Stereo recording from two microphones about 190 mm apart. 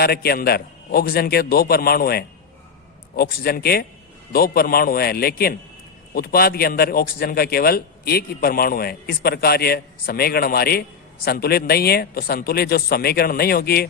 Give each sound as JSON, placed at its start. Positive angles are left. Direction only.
{"t": 0.0, "sound": "a man's voice", "side_deg": 55}